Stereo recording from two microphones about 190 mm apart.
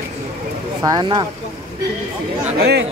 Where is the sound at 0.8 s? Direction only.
20° right (ahead or behind).